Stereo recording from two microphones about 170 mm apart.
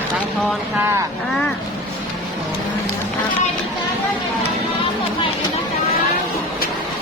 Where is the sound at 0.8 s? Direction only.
15° right (ahead or behind).